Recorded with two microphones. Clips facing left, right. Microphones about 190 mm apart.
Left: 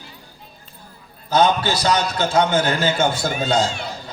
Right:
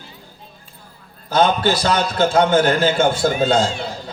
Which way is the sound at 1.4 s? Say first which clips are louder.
Right 1 dB; 50° right (ahead or behind).